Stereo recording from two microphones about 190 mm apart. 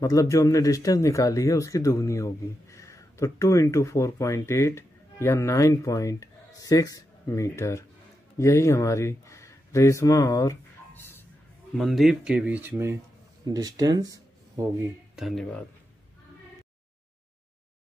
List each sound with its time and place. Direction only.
0.0 s speech: 15° left (ahead or behind)
11.7 s speech: centre (ahead or behind); by 14.7 s 20° right (ahead or behind)
15.1 s speech: centre (ahead or behind)